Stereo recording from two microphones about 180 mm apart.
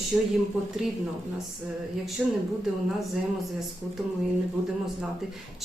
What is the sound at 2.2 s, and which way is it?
Speech, 5° right (ahead or behind).